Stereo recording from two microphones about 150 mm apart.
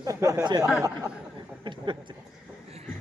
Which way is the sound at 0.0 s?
20° right (ahead or behind).